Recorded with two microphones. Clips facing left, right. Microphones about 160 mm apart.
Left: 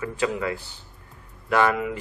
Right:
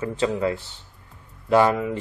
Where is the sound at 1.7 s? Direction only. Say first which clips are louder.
Right 2 dB; 30° right (ahead or behind).